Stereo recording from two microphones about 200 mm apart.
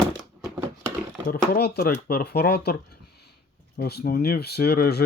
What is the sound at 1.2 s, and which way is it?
Speech, 50° left (ahead or behind).